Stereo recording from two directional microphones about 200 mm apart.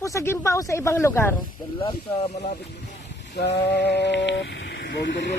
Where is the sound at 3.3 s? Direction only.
55° left (ahead or behind).